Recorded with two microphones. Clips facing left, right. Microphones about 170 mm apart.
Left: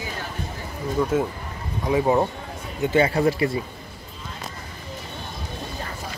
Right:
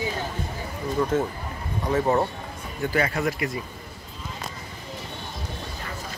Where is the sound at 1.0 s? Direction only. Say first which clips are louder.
Left 1 dB; 10° left (ahead or behind).